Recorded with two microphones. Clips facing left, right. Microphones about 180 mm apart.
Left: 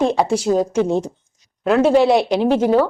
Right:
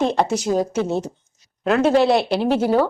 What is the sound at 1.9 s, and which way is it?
Speech, 10° left (ahead or behind).